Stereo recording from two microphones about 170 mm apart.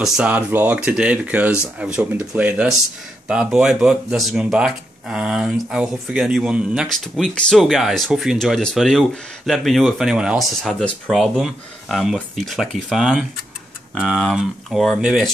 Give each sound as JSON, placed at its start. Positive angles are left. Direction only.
{"t": 0.0, "sound": "speech", "side_deg": -5}